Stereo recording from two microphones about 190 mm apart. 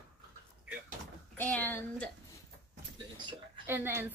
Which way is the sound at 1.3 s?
10° left (ahead or behind).